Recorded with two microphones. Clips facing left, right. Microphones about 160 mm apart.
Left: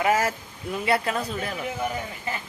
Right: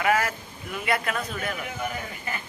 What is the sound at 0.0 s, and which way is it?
A man's voice, 35° left (ahead or behind).